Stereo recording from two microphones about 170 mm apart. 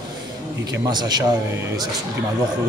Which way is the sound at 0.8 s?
25° right (ahead or behind).